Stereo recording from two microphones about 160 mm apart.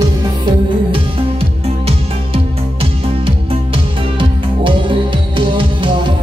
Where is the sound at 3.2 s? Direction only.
35° right (ahead or behind).